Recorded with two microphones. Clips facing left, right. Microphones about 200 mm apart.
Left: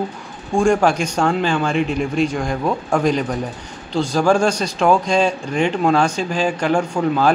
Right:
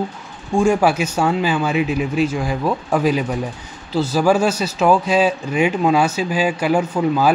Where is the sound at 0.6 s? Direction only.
5° right (ahead or behind).